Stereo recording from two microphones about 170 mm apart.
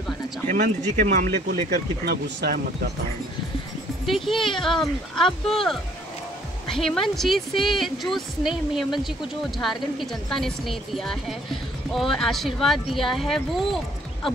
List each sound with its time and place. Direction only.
0.7 s speech: 45° right (ahead or behind)
1.3 s speech: 70° right (ahead or behind)
4.0 s speech: centre (ahead or behind)